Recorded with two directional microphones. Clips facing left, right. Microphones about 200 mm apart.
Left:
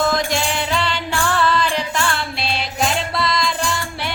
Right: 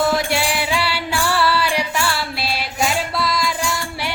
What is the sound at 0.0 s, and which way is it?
Music, 10° right (ahead or behind).